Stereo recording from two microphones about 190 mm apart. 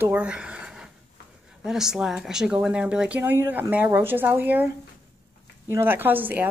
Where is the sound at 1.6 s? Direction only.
5° right (ahead or behind).